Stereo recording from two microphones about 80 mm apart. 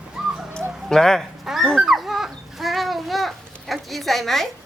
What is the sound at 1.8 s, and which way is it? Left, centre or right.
Dog, centre.